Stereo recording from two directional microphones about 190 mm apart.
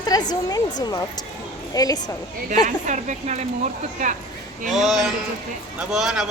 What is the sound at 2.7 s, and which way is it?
Speech, 40° right (ahead or behind).